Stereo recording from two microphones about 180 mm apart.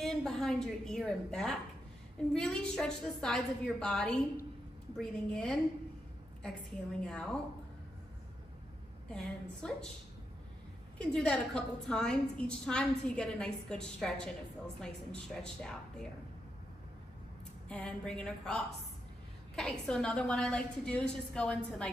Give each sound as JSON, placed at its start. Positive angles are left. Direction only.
{"t": 0.0, "sound": "a woman's voice", "side_deg": 0}
{"t": 7.0, "sound": "a woman's voice", "side_deg": 5}
{"t": 9.1, "sound": "a woman's voice", "side_deg": 5}
{"t": 11.0, "sound": "a woman's voice", "side_deg": 5}
{"t": 17.6, "sound": "a woman's voice", "side_deg": 5}